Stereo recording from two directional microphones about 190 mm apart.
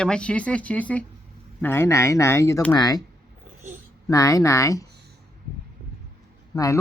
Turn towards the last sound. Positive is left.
turn(degrees=20)  # may be behind; listen again after turning